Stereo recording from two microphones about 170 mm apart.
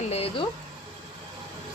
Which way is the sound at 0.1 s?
35° left (ahead or behind).